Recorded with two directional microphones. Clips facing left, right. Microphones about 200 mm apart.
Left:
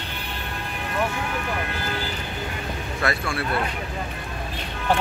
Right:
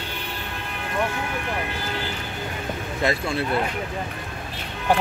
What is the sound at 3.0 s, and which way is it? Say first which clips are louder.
Speech: right 3 dB; 20° right (ahead or behind).